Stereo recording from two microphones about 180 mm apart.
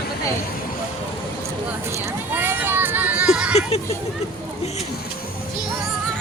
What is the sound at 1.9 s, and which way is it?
Speech, 15° right (ahead or behind).